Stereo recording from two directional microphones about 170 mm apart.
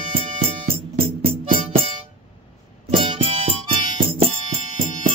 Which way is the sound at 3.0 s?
35° right (ahead or behind).